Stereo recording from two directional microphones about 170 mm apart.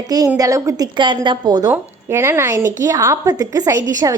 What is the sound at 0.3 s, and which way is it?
A woman's voice, 20° right (ahead or behind).